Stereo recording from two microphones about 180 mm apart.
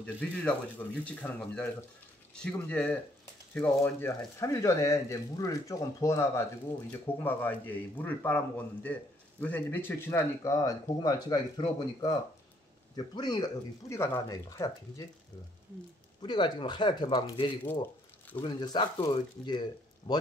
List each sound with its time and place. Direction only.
0.0 s speech: 5° left (ahead or behind)
16.2 s speech: 25° left (ahead or behind)